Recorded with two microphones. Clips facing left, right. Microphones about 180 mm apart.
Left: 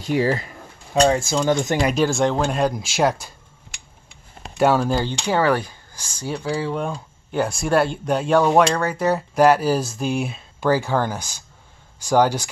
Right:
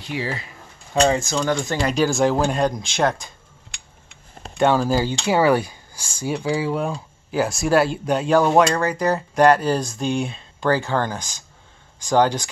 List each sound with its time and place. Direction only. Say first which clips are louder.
0.0 s speech: left 7 dB; 45° left (ahead or behind)
1.0 s speech: left 1 dB; 5° left (ahead or behind)
1.4 s speech: left 3 dB; 20° left (ahead or behind)
1.9 s speech: right 3 dB; centre (ahead or behind)
4.6 s speech: even; 5° left (ahead or behind)